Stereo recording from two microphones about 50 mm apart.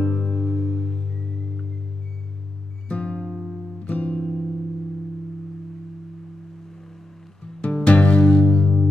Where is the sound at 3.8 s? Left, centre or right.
Left.